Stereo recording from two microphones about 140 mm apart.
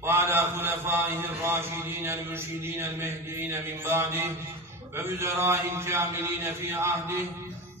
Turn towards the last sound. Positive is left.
turn(degrees=-15)  # may be behind; listen again after turning